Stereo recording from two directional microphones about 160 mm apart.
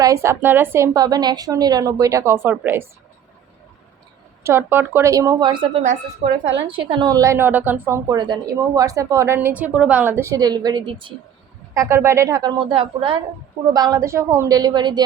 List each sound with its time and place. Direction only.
0.0 s a woman's voice: 20° right (ahead or behind)
4.4 s a woman's voice: 15° right (ahead or behind); by 5.8 s 30° right (ahead or behind)
6.2 s speech: 40° right (ahead or behind)
6.7 s a woman's voice: 30° right (ahead or behind)
8.2 s a woman's voice: 25° right (ahead or behind)
11.7 s a woman's voice: 20° right (ahead or behind)